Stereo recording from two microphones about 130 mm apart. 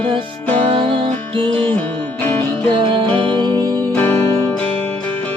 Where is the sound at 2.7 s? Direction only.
40° right (ahead or behind).